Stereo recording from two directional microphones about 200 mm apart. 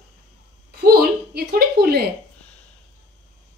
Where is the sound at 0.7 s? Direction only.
50° right (ahead or behind).